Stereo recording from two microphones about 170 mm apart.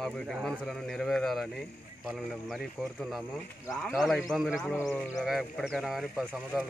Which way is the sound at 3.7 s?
Centre (ahead or behind).